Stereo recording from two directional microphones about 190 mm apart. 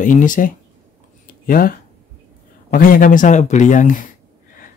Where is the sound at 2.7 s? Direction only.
45° left (ahead or behind).